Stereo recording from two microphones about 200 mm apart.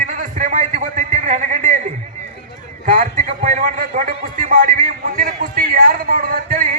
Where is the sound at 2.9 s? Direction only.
40° right (ahead or behind).